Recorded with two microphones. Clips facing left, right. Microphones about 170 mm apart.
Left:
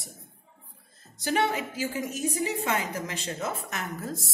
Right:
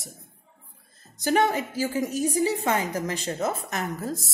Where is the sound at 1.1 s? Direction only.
45° right (ahead or behind).